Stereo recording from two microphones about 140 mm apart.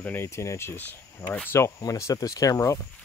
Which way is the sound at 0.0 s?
15° left (ahead or behind).